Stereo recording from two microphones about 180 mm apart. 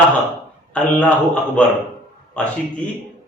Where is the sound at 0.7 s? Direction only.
10° left (ahead or behind).